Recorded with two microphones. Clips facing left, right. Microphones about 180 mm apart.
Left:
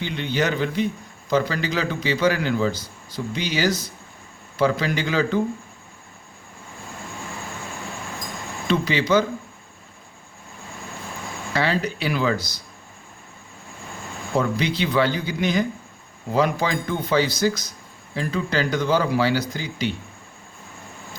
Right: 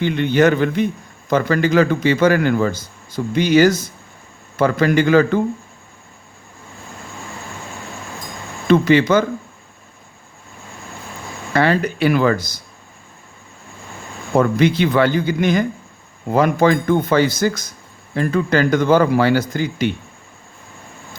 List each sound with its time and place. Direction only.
0.0 s a man's voice: 55° right (ahead or behind)
8.6 s a man's voice: 55° right (ahead or behind)
11.5 s a man's voice: 55° right (ahead or behind)
14.3 s a man's voice: 50° right (ahead or behind)